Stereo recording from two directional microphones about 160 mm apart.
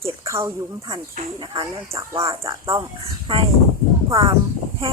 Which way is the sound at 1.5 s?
20° right (ahead or behind).